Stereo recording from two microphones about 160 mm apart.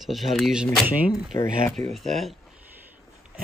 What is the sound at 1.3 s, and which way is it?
Speech, 20° left (ahead or behind).